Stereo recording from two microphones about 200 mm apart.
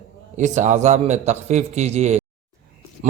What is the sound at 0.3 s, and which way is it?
A man's voice, 35° right (ahead or behind).